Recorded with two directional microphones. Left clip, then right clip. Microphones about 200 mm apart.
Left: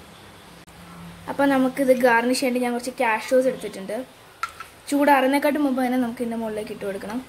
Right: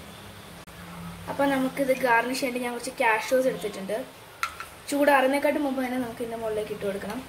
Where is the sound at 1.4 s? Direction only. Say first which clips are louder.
Left 5 dB; 50° left (ahead or behind).